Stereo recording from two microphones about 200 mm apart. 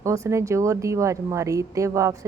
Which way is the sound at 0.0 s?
15° right (ahead or behind).